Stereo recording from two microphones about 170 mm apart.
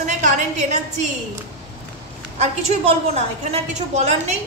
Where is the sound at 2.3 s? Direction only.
40° right (ahead or behind).